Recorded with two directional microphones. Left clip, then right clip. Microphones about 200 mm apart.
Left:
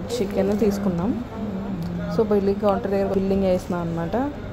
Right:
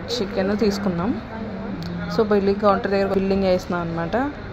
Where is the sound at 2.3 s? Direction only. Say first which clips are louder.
Right 4 dB; 10° left (ahead or behind).